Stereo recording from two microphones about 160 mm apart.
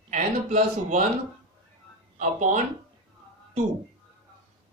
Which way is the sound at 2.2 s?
50° right (ahead or behind).